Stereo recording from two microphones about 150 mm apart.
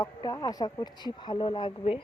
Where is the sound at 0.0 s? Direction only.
25° left (ahead or behind).